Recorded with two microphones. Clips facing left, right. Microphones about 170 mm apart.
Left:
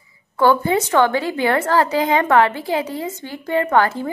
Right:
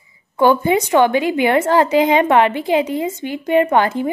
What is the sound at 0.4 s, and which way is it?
A woman's voice, 15° right (ahead or behind).